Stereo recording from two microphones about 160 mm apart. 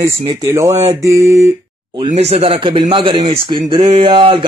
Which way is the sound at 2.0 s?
40° right (ahead or behind).